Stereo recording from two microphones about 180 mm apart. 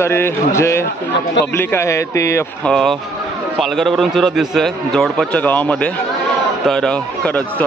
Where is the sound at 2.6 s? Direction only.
Centre (ahead or behind).